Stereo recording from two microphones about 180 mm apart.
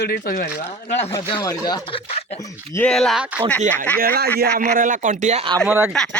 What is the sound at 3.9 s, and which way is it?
A man's voice, 55° right (ahead or behind).